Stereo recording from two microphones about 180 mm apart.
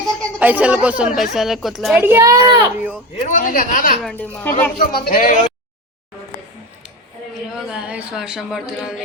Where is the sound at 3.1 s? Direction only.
45° left (ahead or behind).